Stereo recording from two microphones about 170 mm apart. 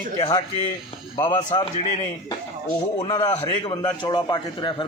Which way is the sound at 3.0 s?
25° left (ahead or behind).